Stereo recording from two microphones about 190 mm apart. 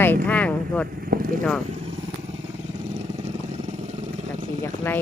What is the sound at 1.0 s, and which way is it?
Vehicle, 50° right (ahead or behind).